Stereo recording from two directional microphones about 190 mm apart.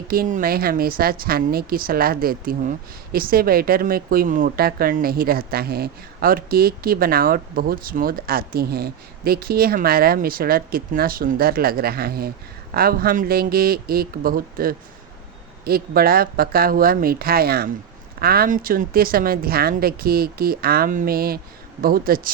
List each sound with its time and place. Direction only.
0.1 s a woman's voice: 45° right (ahead or behind)